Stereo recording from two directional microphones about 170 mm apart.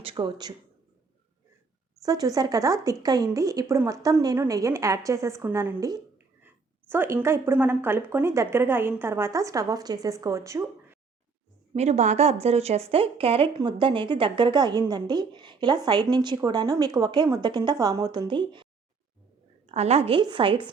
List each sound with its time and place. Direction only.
0.0 s speech: 30° right (ahead or behind)
2.0 s speech: 20° right (ahead or behind)
11.7 s speech: 40° right (ahead or behind)
19.6 s speech: 40° right (ahead or behind)